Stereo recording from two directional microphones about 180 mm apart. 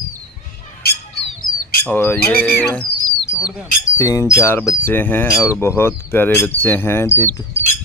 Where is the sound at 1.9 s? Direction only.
10° left (ahead or behind).